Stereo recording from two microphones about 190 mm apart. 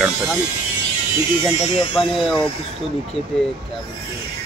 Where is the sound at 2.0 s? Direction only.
Centre (ahead or behind).